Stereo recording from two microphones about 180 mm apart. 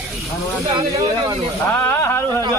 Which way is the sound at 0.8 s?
15° right (ahead or behind).